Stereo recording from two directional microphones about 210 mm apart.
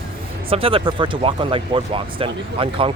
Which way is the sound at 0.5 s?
25° right (ahead or behind).